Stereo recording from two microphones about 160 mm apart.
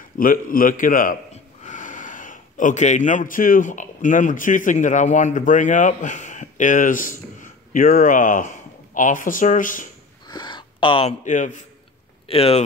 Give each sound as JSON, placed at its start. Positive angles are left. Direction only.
{"t": 0.2, "sound": "a man's voice", "side_deg": 60}
{"t": 10.2, "sound": "a sound", "side_deg": 25}
{"t": 11.2, "sound": "a man's voice", "side_deg": 50}
{"t": 12.3, "sound": "speech", "side_deg": 40}